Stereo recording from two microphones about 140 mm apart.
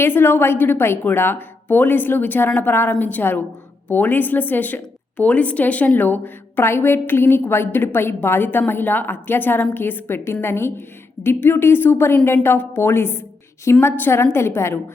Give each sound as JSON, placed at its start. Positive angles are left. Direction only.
{"t": 0.0, "sound": "a woman's voice", "side_deg": 15}